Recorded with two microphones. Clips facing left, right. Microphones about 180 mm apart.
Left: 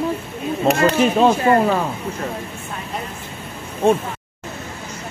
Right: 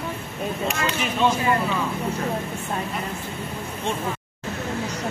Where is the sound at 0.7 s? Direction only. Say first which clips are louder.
Left 10 dB; 40° left (ahead or behind).